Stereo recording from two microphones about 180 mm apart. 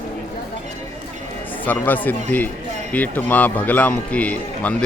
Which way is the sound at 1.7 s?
10° left (ahead or behind).